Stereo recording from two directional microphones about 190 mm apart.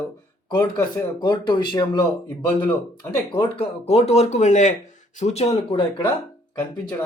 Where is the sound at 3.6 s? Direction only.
30° left (ahead or behind).